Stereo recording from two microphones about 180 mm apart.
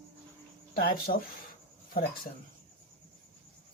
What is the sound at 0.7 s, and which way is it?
Speech, 50° left (ahead or behind).